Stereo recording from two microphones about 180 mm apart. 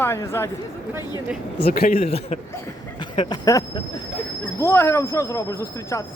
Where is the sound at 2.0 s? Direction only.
35° left (ahead or behind).